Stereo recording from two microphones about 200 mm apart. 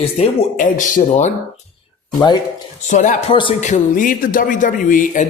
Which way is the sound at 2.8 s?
40° left (ahead or behind).